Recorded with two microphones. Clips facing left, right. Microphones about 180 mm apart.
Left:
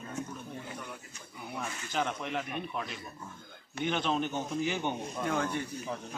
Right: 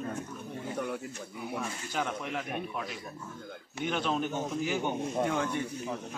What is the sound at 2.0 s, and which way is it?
Speech, 5° right (ahead or behind).